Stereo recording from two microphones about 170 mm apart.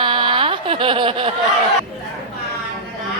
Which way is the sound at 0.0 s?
25° right (ahead or behind).